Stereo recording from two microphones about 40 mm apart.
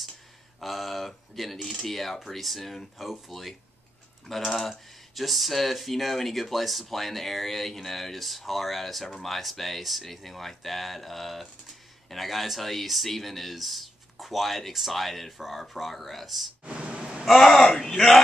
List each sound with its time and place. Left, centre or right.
0.6 s speech: centre
16.6 s a sound: right
17.3 s speech: centre